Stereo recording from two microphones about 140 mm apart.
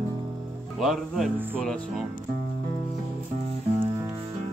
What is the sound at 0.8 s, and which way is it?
Speech, centre (ahead or behind).